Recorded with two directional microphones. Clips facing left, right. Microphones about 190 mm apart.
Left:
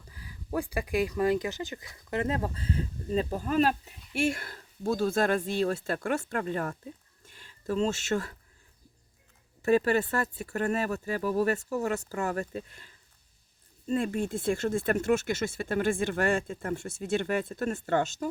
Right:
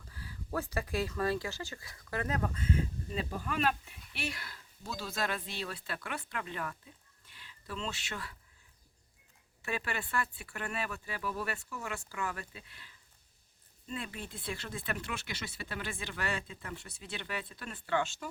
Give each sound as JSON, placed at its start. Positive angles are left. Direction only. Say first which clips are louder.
{"t": 0.0, "sound": "speech", "louder": "even", "side_deg": 15}
{"t": 9.6, "sound": "speech", "louder": "left 14 dB", "side_deg": 40}